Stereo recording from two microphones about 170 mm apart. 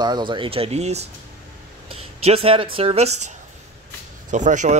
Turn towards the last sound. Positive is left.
turn(degrees=-45)  # may be behind; listen again after turning